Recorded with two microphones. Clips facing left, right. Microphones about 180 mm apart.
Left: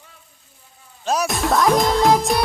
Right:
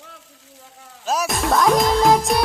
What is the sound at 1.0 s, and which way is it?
Speech, centre (ahead or behind).